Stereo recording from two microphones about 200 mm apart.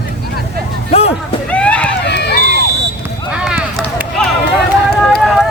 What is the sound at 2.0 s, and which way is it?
Run, 55° left (ahead or behind).